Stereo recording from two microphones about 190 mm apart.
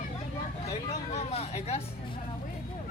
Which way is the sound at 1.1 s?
35° left (ahead or behind).